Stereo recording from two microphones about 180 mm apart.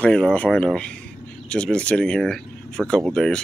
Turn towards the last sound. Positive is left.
turn(degrees=5)  # may be behind; listen again after turning